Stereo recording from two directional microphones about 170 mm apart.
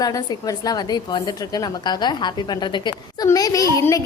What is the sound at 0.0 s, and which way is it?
A child's voice, 20° left (ahead or behind).